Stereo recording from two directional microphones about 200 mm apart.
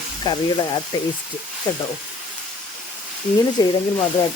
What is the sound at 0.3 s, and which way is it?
Speech, 20° left (ahead or behind).